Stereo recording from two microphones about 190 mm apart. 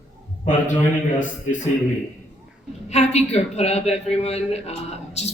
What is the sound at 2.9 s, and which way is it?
A man's voice, 35° left (ahead or behind).